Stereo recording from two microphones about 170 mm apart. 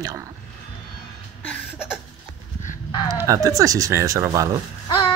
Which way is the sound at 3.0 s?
20° right (ahead or behind).